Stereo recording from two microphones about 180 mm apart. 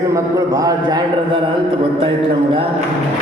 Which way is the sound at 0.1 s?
20° right (ahead or behind).